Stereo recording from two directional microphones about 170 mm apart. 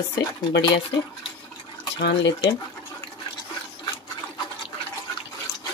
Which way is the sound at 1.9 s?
80° left.